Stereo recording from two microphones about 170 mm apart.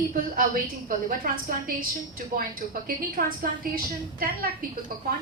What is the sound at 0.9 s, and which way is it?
A woman's voice, 60° right (ahead or behind).